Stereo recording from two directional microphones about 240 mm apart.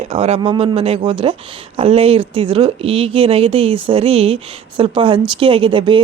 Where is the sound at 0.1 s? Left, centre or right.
Right.